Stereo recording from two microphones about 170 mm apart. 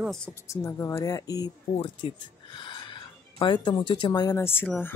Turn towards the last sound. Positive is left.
turn(degrees=10)  # may be behind; listen again after turning